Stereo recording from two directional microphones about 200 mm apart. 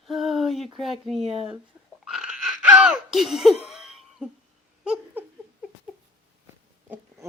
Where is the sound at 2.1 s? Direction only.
Centre (ahead or behind).